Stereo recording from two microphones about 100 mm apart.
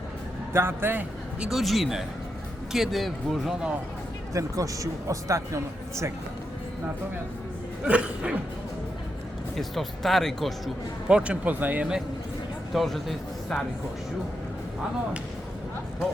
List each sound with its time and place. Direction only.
0.5 s speech: 25° right (ahead or behind)
1.5 s speech: centre (ahead or behind)
4.4 s speech: 35° right (ahead or behind)
7.9 s speech: 10° right (ahead or behind)
9.6 s speech: centre (ahead or behind)
11.1 s speech: 15° right (ahead or behind)
12.7 s speech: centre (ahead or behind)